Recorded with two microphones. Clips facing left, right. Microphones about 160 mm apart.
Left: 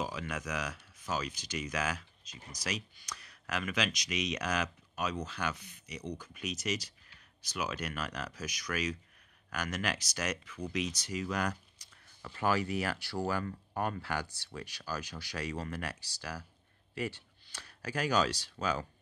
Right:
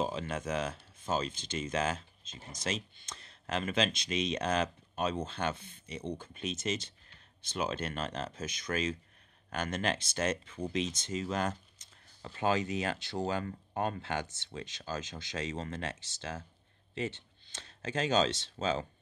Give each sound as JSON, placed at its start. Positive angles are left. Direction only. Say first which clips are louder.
{"t": 0.0, "sound": "speech", "louder": "right 3 dB", "side_deg": -30}